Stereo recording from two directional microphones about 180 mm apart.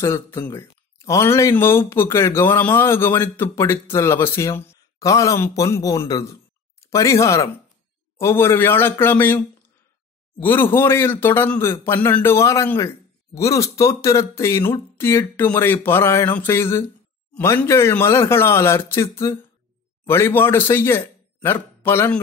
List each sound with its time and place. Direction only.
0.0 s a man's voice: 15° left (ahead or behind)
10.4 s a man's voice: 10° left (ahead or behind)